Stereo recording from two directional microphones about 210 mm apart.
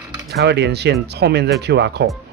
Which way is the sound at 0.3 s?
50° right (ahead or behind).